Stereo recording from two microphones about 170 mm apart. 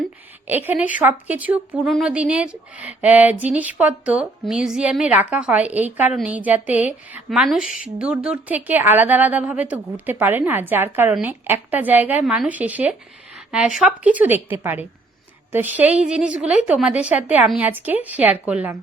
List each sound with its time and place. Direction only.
0.4 s speech: 10° right (ahead or behind)